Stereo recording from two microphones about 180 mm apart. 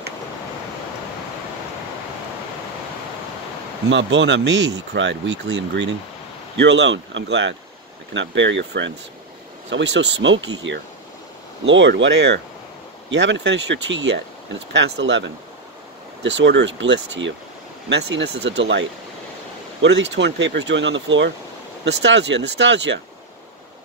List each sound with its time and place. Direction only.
3.9 s speech: 90° right
9.7 s speech: 80° right
11.6 s speech: 90° right
16.3 s speech: 85° right
22.0 s speech: 80° right